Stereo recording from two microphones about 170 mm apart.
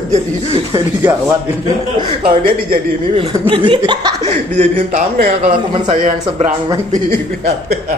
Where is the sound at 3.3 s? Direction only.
30° right (ahead or behind).